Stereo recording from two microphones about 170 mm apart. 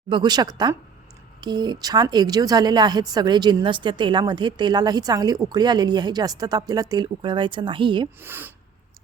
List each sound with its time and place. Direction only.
0.1 s a woman's voice: 25° right (ahead or behind)
8.2 s speech: 10° right (ahead or behind)